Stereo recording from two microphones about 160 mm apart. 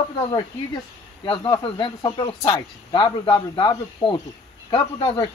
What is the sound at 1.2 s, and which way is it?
Speech, 30° left (ahead or behind).